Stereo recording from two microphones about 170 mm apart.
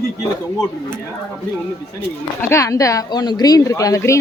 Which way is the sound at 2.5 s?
20° left (ahead or behind).